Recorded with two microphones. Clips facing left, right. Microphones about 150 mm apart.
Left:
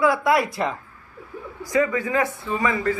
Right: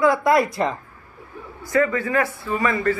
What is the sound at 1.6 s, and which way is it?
A man's voice, 15° left (ahead or behind).